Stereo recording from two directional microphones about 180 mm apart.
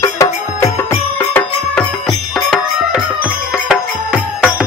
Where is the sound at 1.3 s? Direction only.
5° left (ahead or behind).